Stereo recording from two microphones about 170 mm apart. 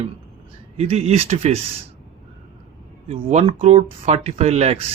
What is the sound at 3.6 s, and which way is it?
Speech, 40° right (ahead or behind).